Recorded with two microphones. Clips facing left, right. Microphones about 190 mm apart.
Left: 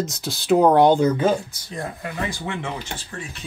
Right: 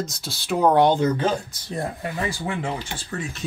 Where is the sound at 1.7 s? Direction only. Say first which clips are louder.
Right 2 dB; 35° right (ahead or behind).